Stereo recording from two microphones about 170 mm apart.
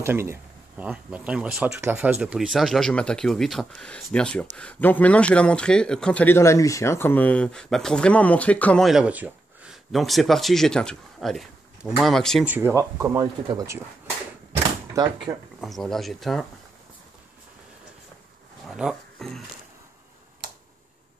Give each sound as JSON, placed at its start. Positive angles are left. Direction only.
{"t": 0.0, "sound": "speech", "side_deg": -15}
{"t": 12.4, "sound": "speech", "side_deg": -15}
{"t": 15.0, "sound": "speech", "side_deg": -20}
{"t": 15.6, "sound": "speech", "side_deg": 0}
{"t": 18.7, "sound": "speech", "side_deg": -5}